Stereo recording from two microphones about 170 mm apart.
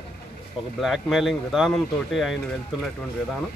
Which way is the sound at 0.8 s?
Centre (ahead or behind).